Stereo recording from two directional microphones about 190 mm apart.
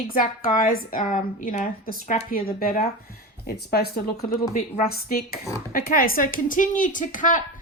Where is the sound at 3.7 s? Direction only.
55° left (ahead or behind).